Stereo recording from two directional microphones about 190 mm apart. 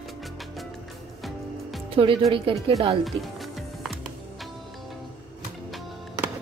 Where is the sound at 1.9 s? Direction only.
30° right (ahead or behind).